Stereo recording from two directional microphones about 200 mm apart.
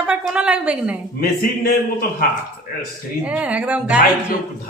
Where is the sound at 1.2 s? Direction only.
50° left (ahead or behind).